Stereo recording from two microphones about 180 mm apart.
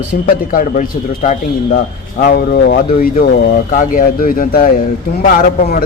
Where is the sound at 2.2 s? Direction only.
55° left (ahead or behind).